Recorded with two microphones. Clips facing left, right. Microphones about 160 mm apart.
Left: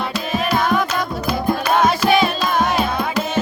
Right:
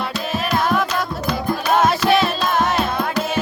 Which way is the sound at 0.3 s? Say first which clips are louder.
Left 1 dB; centre (ahead or behind).